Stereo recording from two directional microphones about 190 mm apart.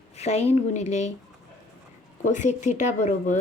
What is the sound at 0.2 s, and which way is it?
Speech, 35° left (ahead or behind).